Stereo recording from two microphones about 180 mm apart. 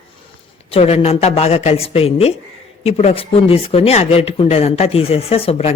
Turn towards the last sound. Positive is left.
turn(degrees=35)  # may be behind; listen again after turning